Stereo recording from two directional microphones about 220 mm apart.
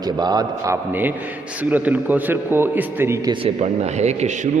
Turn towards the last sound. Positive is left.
turn(degrees=-30)  # may be behind; listen again after turning